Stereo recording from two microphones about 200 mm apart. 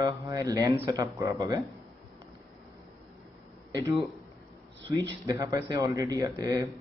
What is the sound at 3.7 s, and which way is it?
A man's voice, 15° right (ahead or behind).